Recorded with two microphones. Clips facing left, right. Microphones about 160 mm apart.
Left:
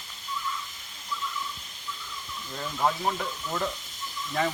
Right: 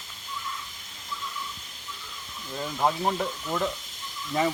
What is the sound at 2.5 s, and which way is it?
Speech, 15° right (ahead or behind).